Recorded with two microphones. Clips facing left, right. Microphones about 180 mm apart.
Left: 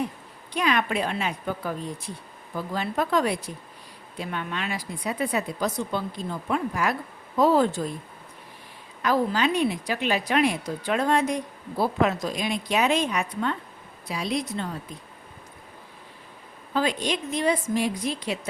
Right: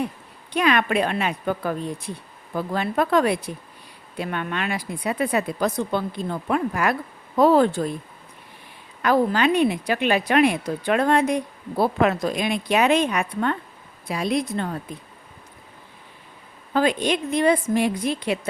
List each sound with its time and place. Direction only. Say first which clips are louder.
0.5 s speech: right 4 dB; 65° right (ahead or behind)
9.0 s a woman's voice: right 4 dB; 60° right (ahead or behind)
16.7 s speech: right 5 dB; 55° right (ahead or behind)